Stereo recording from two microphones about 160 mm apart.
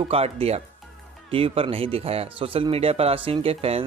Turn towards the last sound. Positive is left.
turn(degrees=-40)  # may be behind; listen again after turning